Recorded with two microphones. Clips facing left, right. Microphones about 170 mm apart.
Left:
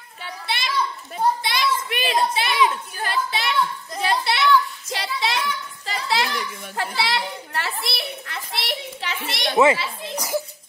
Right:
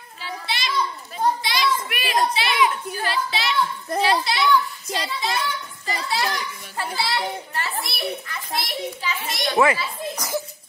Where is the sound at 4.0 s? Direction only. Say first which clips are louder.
Right 1 dB; 65° left (ahead or behind).